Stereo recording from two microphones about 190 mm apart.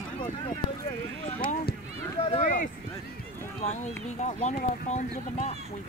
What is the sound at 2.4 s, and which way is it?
Speech, 45° left (ahead or behind).